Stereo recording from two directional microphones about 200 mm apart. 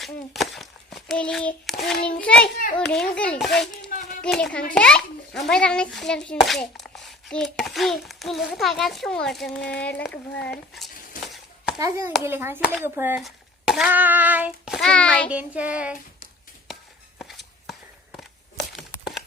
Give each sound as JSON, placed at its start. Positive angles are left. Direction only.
{"t": 0.0, "sound": "a sound", "side_deg": 0}
{"t": 2.0, "sound": "a child's voice", "side_deg": 5}
{"t": 2.6, "sound": "a child's voice", "side_deg": 45}
{"t": 3.2, "sound": "a child's voice", "side_deg": 5}
{"t": 11.8, "sound": "a child's voice", "side_deg": -15}
{"t": 15.3, "sound": "a child's voice", "side_deg": -5}
{"t": 17.2, "sound": "a sound", "side_deg": 0}